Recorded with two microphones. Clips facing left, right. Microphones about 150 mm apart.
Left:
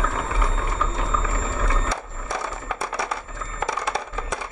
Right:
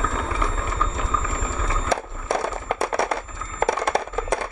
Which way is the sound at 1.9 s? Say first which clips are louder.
Right 6 dB; 60° right (ahead or behind).